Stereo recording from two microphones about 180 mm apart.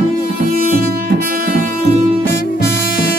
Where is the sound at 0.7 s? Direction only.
55° right (ahead or behind).